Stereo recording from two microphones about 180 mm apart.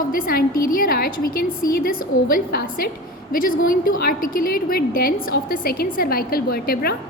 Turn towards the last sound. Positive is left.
turn(degrees=55)  # may be behind; listen again after turning